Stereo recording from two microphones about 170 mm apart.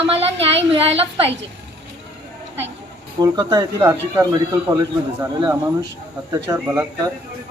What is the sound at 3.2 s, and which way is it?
Speech, 20° right (ahead or behind).